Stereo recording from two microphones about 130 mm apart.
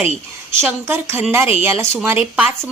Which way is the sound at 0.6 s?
15° right (ahead or behind).